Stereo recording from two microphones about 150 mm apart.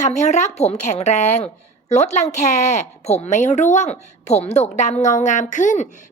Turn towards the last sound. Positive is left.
turn(degrees=55)  # may be behind; listen again after turning